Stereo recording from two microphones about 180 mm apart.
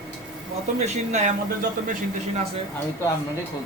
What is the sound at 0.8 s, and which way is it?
Speech, 40° right (ahead or behind).